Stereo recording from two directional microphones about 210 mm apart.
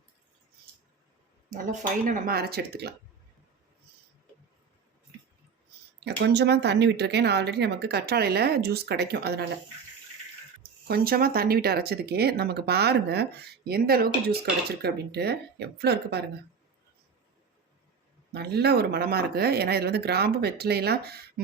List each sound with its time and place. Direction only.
1.5 s speech: 40° right (ahead or behind)
6.1 s speech: 55° right (ahead or behind)
10.8 s speech: 45° right (ahead or behind)
18.3 s speech: 50° right (ahead or behind)